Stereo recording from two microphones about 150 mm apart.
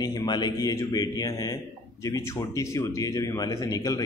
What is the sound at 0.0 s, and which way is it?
Speech, 25° left (ahead or behind).